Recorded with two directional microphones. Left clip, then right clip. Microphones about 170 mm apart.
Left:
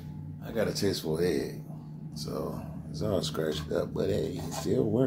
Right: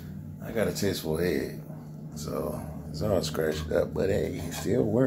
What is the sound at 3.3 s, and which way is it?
Speech, 10° right (ahead or behind).